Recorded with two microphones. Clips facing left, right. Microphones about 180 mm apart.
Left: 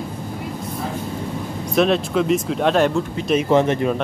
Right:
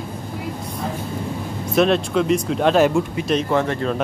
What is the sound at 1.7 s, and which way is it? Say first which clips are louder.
Speech: even; centre (ahead or behind).